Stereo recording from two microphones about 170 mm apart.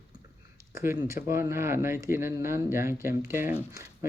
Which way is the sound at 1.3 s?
15° right (ahead or behind).